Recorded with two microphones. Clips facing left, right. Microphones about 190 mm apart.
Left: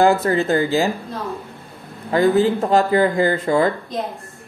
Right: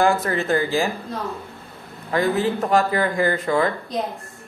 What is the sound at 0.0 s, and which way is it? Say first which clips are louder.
Speech: left 4 dB; 25° left (ahead or behind).